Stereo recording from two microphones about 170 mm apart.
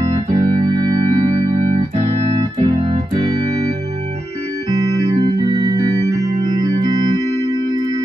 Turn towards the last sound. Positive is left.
turn(degrees=-25)  # may be behind; listen again after turning